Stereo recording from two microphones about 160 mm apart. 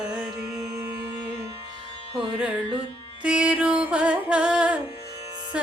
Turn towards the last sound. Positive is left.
turn(degrees=-5)  # may be behind; listen again after turning